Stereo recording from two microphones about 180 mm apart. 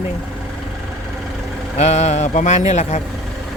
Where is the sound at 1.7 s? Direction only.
40° left (ahead or behind).